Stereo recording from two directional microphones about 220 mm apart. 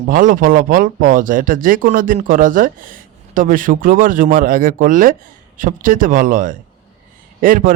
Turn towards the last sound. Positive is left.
turn(degrees=-40)  # may be behind; listen again after turning